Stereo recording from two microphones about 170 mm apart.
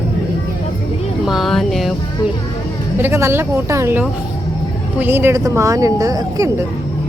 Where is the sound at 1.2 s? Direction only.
Centre (ahead or behind).